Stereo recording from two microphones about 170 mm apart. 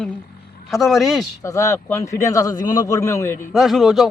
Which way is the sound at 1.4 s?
20° left (ahead or behind).